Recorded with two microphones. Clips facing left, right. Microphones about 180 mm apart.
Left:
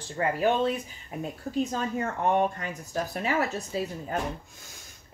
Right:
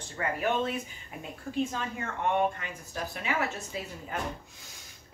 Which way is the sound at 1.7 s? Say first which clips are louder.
Left 6 dB; 40° left (ahead or behind).